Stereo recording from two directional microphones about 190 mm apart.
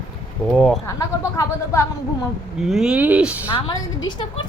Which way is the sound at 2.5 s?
Centre (ahead or behind).